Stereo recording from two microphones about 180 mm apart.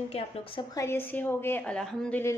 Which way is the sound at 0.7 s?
15° left (ahead or behind).